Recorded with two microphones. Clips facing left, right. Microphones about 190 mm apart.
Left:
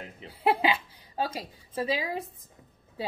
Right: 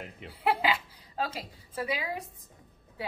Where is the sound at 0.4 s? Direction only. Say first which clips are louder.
Left 3 dB; 25° left (ahead or behind).